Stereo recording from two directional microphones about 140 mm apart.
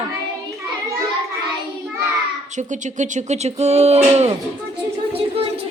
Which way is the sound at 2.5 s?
60° right (ahead or behind).